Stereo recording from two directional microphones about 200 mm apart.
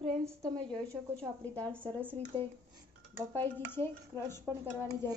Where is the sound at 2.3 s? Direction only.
25° right (ahead or behind).